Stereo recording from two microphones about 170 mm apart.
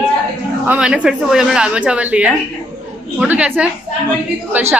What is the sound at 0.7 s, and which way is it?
A woman's voice, 5° right (ahead or behind).